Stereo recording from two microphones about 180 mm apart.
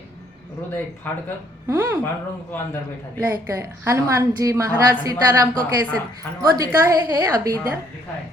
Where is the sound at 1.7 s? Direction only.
15° right (ahead or behind).